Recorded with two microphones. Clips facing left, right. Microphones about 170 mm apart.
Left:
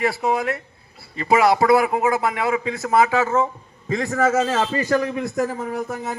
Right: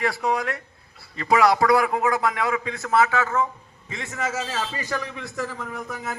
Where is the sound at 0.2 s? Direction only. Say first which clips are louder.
Left 3 dB; 5° left (ahead or behind); by 3.5 s 20° left (ahead or behind).